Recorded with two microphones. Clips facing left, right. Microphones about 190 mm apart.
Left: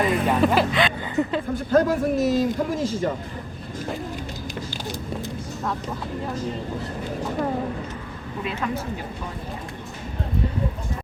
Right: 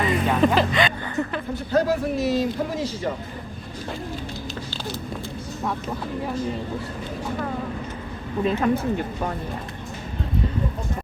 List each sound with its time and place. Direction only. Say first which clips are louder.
0.0 s music: even; centre (ahead or behind)
1.1 s a sound: left 3 dB; 15° left (ahead or behind)
1.5 s speech: left 2 dB; 50° left (ahead or behind)
8.4 s speech: right 7 dB; 45° right (ahead or behind)